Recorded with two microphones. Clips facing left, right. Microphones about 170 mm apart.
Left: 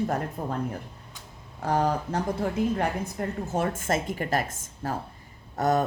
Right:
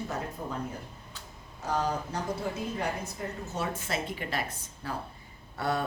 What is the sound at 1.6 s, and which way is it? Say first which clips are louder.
Speech: left 5 dB; 60° left (ahead or behind).